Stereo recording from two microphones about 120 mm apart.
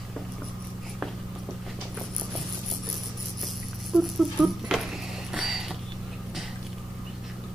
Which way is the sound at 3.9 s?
5° right (ahead or behind).